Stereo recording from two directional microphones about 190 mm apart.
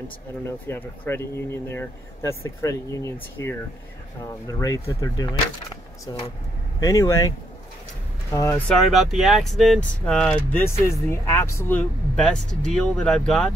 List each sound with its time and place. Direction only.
0.5 s speech: 10° left (ahead or behind)
8.3 s speech: 15° left (ahead or behind)
8.9 s speech: centre (ahead or behind)